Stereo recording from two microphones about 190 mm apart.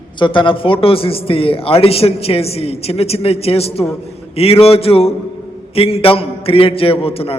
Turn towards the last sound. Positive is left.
turn(degrees=30)  # may be behind; listen again after turning